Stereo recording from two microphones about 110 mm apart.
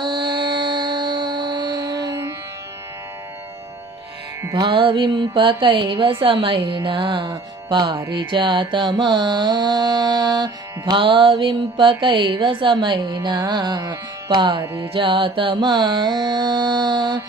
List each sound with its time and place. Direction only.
0.0 s music: 45° right (ahead or behind)
4.6 s mantra: 50° right (ahead or behind)
14.6 s carnatic music: 20° right (ahead or behind)
14.9 s mantra: 55° right (ahead or behind)